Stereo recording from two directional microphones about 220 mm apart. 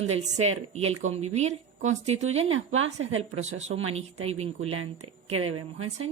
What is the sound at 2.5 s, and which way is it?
Speech, 65° right (ahead or behind).